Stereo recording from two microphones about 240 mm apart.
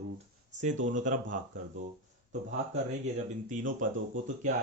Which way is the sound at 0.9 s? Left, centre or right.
Right.